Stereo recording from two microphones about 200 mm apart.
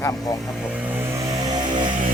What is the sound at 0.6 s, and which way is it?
Vehicle, 5° right (ahead or behind).